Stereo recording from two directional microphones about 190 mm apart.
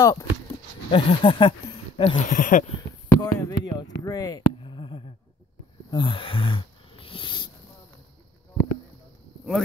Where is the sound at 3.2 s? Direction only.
20° left (ahead or behind).